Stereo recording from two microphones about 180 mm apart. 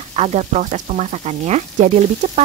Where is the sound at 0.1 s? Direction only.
35° right (ahead or behind).